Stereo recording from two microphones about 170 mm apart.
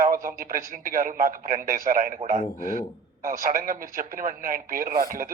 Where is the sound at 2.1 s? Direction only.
40° right (ahead or behind).